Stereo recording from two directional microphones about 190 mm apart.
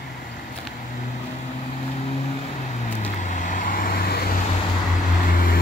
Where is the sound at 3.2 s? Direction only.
40° left (ahead or behind).